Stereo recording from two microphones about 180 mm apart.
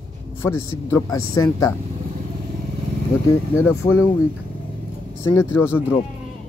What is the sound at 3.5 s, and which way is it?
Speech, 15° left (ahead or behind).